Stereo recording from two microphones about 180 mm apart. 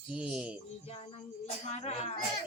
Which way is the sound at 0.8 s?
35° left (ahead or behind).